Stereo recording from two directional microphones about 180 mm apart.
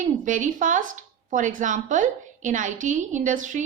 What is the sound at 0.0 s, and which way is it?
Speech, 45° right (ahead or behind).